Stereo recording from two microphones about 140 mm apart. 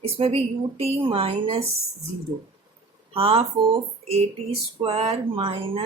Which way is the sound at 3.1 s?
45° right (ahead or behind).